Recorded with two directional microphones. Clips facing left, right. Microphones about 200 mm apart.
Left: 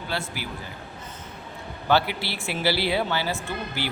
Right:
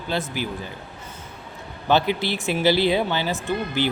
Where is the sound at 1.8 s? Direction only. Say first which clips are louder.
Right 3 dB; 20° right (ahead or behind).